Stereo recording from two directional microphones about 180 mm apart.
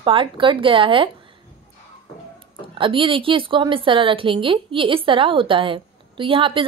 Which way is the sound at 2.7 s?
30° right (ahead or behind).